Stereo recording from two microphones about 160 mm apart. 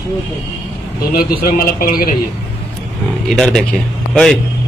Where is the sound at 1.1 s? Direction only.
65° left (ahead or behind).